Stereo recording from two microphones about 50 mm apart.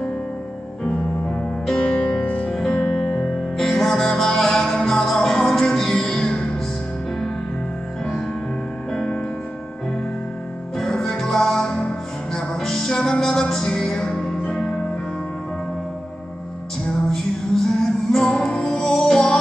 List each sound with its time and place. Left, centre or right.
0.8 s music: centre
3.5 s music: centre
8.9 s music: centre
10.8 s music: centre
17.1 s music: centre